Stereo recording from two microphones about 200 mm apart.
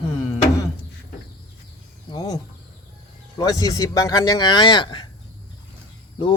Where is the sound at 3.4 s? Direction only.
15° left (ahead or behind).